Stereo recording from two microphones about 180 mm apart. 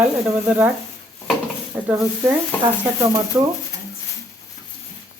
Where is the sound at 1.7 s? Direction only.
10° right (ahead or behind).